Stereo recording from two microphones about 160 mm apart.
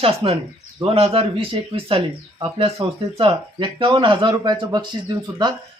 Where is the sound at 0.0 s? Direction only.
35° right (ahead or behind).